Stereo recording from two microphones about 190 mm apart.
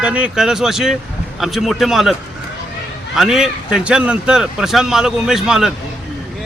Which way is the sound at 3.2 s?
Centre (ahead or behind).